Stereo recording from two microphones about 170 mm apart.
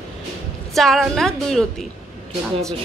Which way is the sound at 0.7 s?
Centre (ahead or behind).